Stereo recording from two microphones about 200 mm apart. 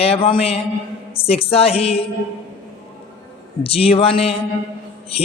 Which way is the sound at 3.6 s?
30° left (ahead or behind).